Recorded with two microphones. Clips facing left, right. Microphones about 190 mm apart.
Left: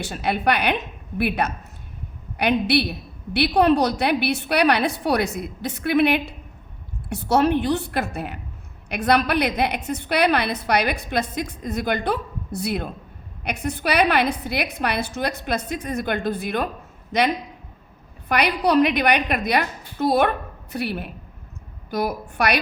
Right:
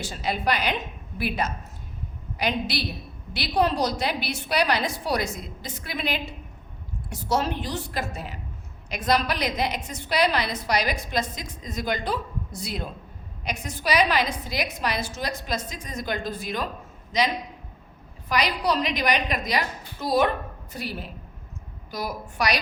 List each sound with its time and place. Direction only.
0.0 s a woman's voice: 60° left (ahead or behind)